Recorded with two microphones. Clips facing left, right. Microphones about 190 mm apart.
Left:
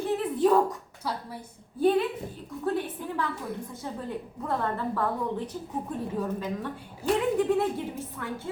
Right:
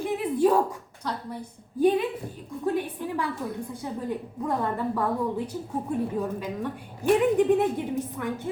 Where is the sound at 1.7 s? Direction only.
15° right (ahead or behind).